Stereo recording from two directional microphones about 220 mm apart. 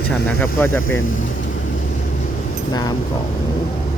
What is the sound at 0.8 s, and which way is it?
Speech, 65° left (ahead or behind).